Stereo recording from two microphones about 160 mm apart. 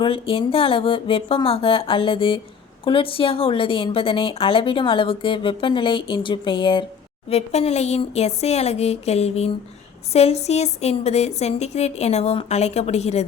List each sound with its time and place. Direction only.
0.0 s a woman's voice: 35° left (ahead or behind)